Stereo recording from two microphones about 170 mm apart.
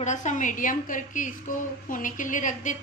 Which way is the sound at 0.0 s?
45° left (ahead or behind).